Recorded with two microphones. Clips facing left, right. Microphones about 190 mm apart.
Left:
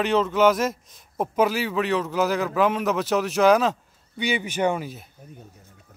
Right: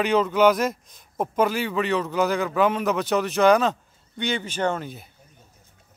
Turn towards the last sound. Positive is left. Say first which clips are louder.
# left 2 dB
turn(degrees=5)  # may be behind; listen again after turning